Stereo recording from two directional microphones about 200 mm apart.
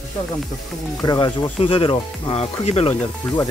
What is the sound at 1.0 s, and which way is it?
Speech, 20° left (ahead or behind).